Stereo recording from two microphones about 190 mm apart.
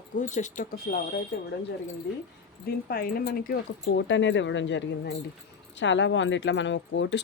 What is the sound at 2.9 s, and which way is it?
Speech, 50° left (ahead or behind).